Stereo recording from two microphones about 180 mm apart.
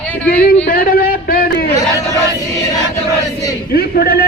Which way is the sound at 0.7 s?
55° left (ahead or behind).